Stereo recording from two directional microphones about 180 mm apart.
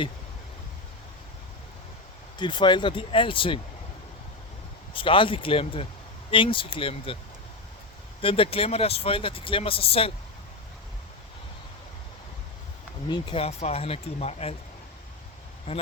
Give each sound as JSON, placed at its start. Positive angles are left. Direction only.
{"t": 2.4, "sound": "speech", "side_deg": 25}
{"t": 4.9, "sound": "speech", "side_deg": 30}
{"t": 8.2, "sound": "speech", "side_deg": 30}
{"t": 13.1, "sound": "speech", "side_deg": 25}
{"t": 15.7, "sound": "speech", "side_deg": 30}